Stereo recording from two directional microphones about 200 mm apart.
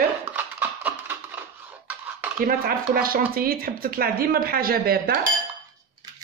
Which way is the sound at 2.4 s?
45° right (ahead or behind).